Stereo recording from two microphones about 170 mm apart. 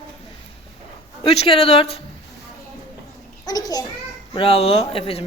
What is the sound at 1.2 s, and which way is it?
Speech, 35° left (ahead or behind).